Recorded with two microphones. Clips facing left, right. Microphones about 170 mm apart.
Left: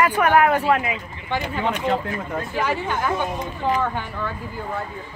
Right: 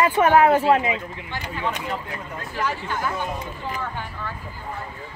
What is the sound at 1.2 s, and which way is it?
Speech, 90° left.